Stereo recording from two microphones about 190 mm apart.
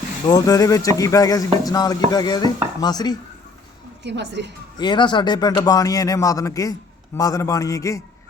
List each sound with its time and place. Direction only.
0.3 s speech: 20° left (ahead or behind)
4.0 s a woman's voice: 65° right (ahead or behind)
4.8 s a man's voice: 25° left (ahead or behind)